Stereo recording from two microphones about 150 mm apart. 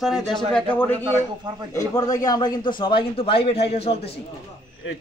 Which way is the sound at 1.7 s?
25° left (ahead or behind).